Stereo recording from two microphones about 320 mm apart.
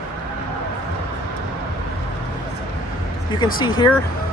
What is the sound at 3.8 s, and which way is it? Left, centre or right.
Speech, centre.